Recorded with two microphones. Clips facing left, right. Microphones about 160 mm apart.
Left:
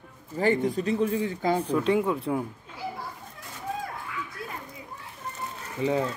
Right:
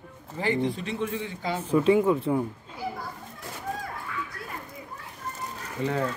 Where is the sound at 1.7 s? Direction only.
Centre (ahead or behind).